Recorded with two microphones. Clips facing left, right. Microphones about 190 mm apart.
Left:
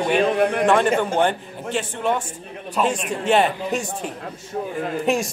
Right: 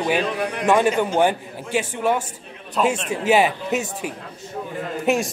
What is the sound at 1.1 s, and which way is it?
A man's voice, 5° right (ahead or behind).